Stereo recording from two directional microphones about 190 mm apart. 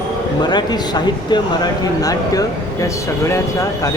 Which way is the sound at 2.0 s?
20° left (ahead or behind).